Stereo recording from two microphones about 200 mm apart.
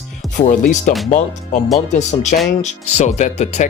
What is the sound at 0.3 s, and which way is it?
Speech, 35° left (ahead or behind).